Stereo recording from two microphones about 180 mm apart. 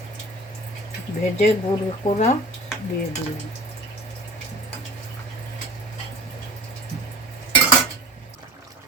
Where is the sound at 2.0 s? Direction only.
45° left (ahead or behind).